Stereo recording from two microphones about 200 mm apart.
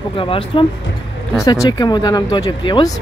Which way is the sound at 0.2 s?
25° left (ahead or behind).